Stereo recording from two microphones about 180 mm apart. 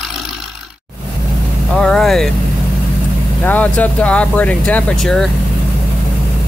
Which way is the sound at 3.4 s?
10° left (ahead or behind).